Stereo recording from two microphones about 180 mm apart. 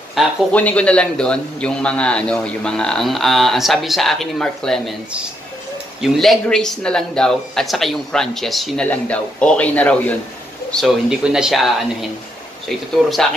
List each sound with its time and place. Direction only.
0.1 s a man's voice: 5° left (ahead or behind)